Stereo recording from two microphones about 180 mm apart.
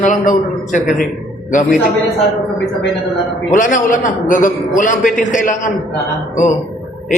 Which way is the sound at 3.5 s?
45° left (ahead or behind).